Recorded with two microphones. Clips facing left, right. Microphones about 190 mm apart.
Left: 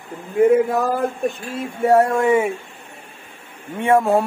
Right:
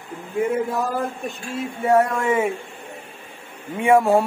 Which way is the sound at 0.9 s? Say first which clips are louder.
Left 5 dB; 55° left (ahead or behind).